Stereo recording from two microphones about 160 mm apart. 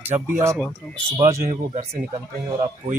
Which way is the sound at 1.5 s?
45° right (ahead or behind).